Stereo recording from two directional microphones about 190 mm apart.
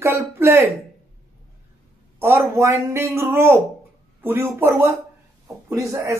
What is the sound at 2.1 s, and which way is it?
Speech, 15° right (ahead or behind).